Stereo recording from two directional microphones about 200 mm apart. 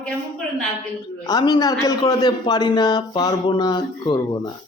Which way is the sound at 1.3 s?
20° left (ahead or behind).